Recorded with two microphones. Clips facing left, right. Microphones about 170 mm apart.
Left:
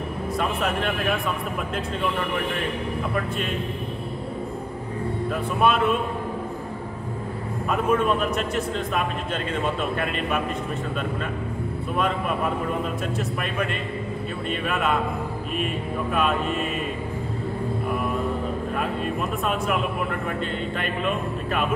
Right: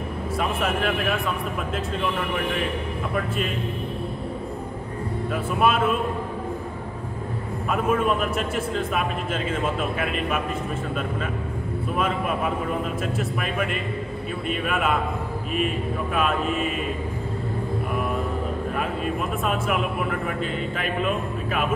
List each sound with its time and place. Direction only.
0.4 s speech: centre (ahead or behind)
5.6 s a man's voice: 5° right (ahead or behind)
7.7 s a man's voice: centre (ahead or behind)
14.5 s speech: 5° right (ahead or behind)
16.2 s a man's voice: centre (ahead or behind)
19.4 s a man's voice: centre (ahead or behind)